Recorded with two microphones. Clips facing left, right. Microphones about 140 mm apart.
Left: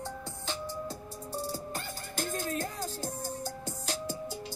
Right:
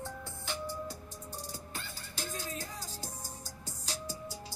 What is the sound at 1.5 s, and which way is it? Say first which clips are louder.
Music: left 7 dB; 45° left (ahead or behind).